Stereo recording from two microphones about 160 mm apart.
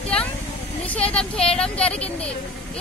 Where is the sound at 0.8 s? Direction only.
10° left (ahead or behind).